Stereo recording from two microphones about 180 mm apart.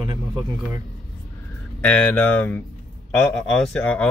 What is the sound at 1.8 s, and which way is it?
Speech, 10° left (ahead or behind).